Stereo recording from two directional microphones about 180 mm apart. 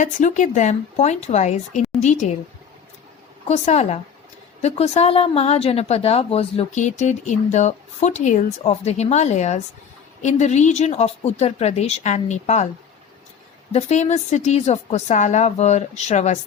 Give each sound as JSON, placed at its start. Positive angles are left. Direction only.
{"t": 0.0, "sound": "a woman's voice", "side_deg": 45}
{"t": 3.4, "sound": "a woman's voice", "side_deg": 40}
{"t": 13.7, "sound": "a woman's voice", "side_deg": 40}